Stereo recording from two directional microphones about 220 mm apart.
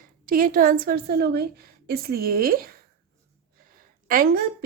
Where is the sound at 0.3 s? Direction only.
40° right (ahead or behind).